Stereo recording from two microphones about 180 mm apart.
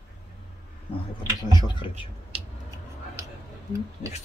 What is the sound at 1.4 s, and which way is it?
Speech, 25° left (ahead or behind).